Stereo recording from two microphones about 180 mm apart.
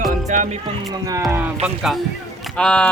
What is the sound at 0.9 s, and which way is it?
Speech, 20° right (ahead or behind).